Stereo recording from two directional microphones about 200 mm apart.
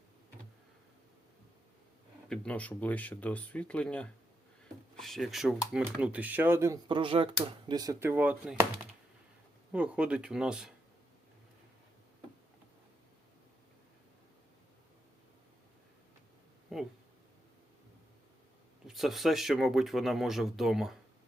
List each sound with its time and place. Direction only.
2.3 s speech: 5° left (ahead or behind); by 6.7 s 10° right (ahead or behind)
6.8 s speech: 25° right (ahead or behind); by 8.6 s 10° right (ahead or behind)
9.7 s speech: 5° right (ahead or behind)
16.7 s a sound: centre (ahead or behind)
18.9 s speech: centre (ahead or behind)